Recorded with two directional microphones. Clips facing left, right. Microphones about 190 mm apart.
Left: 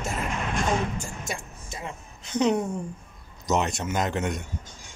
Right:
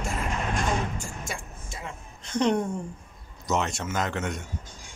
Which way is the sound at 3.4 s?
20° left (ahead or behind).